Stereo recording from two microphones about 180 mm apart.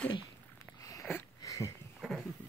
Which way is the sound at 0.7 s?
20° left (ahead or behind).